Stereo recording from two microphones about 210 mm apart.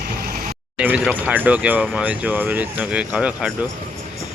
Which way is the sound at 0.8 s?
10° right (ahead or behind).